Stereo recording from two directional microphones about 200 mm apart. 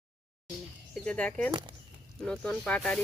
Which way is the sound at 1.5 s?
20° right (ahead or behind).